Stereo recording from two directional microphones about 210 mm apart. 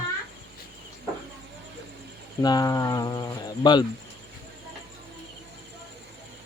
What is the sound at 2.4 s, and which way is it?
Speech, 20° left (ahead or behind).